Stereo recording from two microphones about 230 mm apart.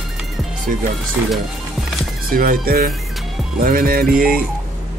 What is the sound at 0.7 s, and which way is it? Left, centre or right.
Speech, right.